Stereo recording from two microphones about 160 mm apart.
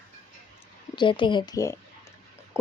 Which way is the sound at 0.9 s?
30° left (ahead or behind).